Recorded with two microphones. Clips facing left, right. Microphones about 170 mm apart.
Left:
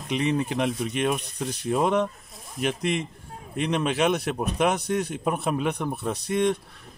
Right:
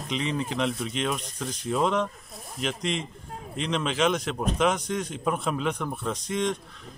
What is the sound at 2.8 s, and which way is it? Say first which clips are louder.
Speech: left 2 dB; 60° left (ahead or behind).